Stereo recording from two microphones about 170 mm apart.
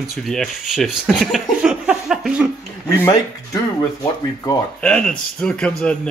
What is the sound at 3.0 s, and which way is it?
Speech, 15° left (ahead or behind).